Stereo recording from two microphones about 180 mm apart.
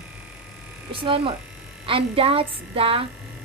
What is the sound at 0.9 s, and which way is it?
A child's voice, 30° right (ahead or behind).